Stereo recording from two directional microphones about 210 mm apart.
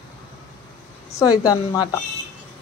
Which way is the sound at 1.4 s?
15° left (ahead or behind).